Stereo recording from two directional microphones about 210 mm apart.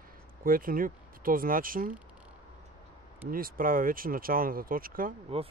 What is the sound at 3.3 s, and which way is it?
Speech, 45° right (ahead or behind).